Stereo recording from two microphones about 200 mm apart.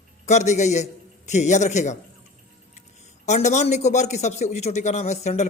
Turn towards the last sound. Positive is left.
turn(degrees=35)  # may be behind; listen again after turning